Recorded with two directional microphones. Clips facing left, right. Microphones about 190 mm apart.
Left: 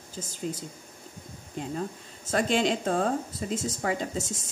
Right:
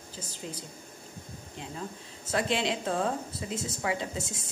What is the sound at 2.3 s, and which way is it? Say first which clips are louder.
Speech: left 4 dB; 45° left (ahead or behind).